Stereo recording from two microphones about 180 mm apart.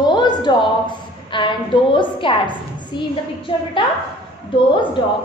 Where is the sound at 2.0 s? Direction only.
25° left (ahead or behind).